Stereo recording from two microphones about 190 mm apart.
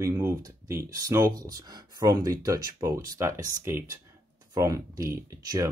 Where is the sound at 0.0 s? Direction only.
10° right (ahead or behind).